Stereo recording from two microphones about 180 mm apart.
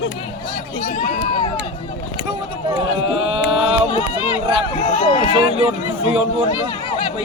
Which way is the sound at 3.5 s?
30° right (ahead or behind).